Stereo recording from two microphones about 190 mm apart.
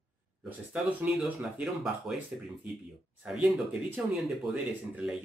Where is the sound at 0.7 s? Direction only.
5° right (ahead or behind).